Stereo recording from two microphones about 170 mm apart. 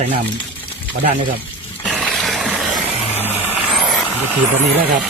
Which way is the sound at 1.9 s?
Centre (ahead or behind).